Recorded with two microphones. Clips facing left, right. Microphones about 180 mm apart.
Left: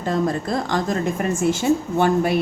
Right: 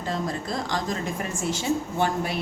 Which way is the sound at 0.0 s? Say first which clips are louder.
Left 7 dB; 55° left (ahead or behind).